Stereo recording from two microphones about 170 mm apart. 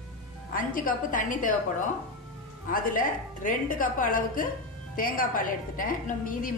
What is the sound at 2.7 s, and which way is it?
A woman's voice, 55° left (ahead or behind).